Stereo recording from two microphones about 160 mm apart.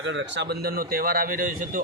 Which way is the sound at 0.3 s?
90° right.